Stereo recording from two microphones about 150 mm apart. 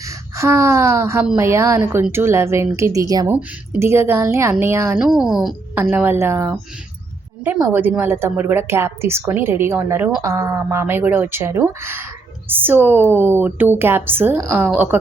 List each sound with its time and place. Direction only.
0.0 s a woman's voice: 20° right (ahead or behind)
4.9 s a woman's voice: 5° right (ahead or behind)
7.6 s a woman's voice: 10° right (ahead or behind)